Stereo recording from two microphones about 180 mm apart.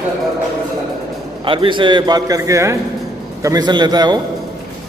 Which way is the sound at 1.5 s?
30° right (ahead or behind).